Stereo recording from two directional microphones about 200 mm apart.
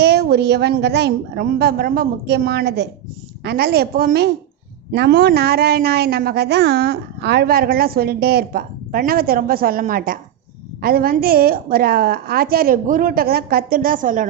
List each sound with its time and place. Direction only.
0.0 s a woman's voice: 55° right (ahead or behind)